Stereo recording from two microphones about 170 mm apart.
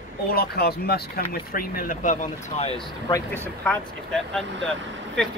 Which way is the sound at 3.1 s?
15° left (ahead or behind).